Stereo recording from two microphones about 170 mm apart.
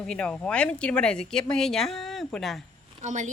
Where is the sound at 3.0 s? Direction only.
45° right (ahead or behind).